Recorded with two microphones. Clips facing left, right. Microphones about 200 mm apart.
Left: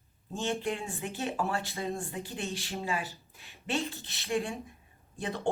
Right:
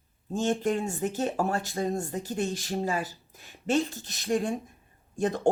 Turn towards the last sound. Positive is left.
turn(degrees=-45)  # may be behind; listen again after turning